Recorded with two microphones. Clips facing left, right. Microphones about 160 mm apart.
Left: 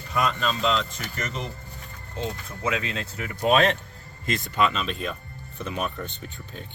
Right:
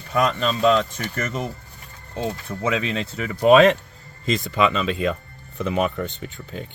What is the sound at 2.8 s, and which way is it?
Speech, 75° right (ahead or behind).